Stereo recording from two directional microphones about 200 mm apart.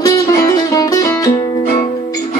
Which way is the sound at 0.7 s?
15° left (ahead or behind).